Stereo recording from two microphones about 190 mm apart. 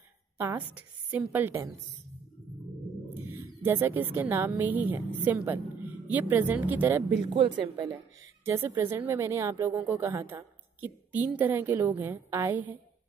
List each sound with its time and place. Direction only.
0.4 s a woman's voice: 10° right (ahead or behind)
3.3 s a woman's voice: 10° right (ahead or behind)
7.6 s speech: 25° right (ahead or behind)
8.5 s a woman's voice: 15° right (ahead or behind)